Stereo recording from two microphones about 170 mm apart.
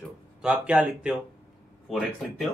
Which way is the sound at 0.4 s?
5° right (ahead or behind).